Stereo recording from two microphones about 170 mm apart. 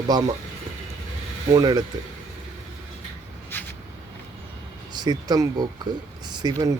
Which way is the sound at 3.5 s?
10° left (ahead or behind).